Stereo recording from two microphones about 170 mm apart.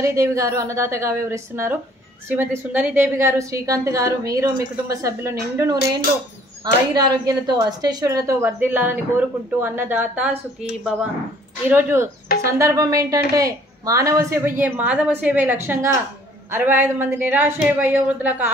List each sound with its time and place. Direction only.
0.0 s a woman's voice: 15° right (ahead or behind)